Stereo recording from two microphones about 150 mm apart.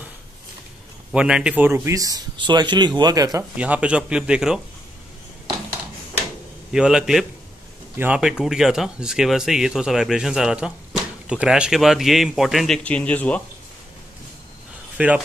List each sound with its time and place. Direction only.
1.1 s a man's voice: 5° right (ahead or behind); by 3.4 s 25° right (ahead or behind)
3.5 s a man's voice: 10° right (ahead or behind)
6.7 s speech: 5° right (ahead or behind)
15.0 s a man's voice: 10° right (ahead or behind)